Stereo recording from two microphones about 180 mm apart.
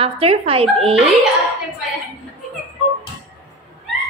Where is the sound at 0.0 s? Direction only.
30° right (ahead or behind).